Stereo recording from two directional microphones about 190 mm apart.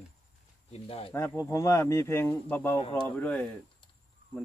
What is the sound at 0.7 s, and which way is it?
Speech, 30° left (ahead or behind).